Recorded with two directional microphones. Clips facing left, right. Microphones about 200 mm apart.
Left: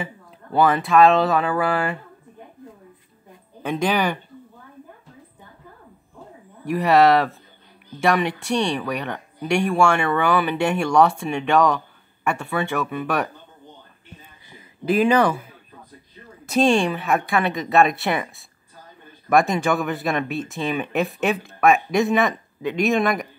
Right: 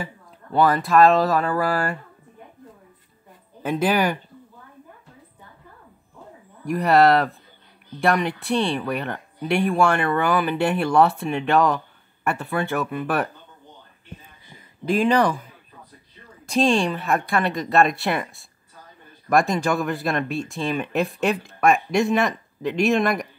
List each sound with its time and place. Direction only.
0.0 s speech: centre (ahead or behind)
3.6 s speech: 5° right (ahead or behind)
6.6 s speech: centre (ahead or behind)
14.9 s speech: 5° left (ahead or behind)